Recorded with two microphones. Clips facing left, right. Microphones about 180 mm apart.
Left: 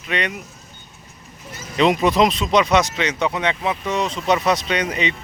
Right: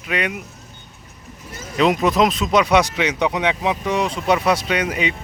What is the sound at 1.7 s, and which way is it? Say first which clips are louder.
Speech: even; centre (ahead or behind).